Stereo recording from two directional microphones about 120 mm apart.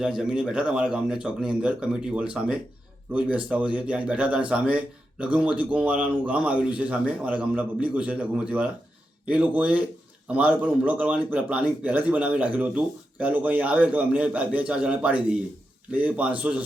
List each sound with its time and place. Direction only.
0.0 s a man's voice: 5° right (ahead or behind)